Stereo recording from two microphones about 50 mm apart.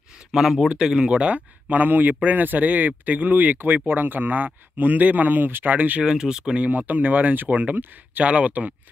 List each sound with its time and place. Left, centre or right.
0.3 s speech: centre; by 6.0 s right
6.0 s speech: centre